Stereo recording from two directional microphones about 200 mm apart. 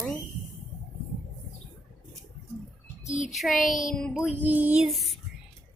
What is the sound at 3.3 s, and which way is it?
Child singing, centre (ahead or behind).